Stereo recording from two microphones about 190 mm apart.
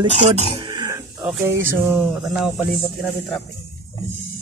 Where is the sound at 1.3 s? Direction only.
15° right (ahead or behind).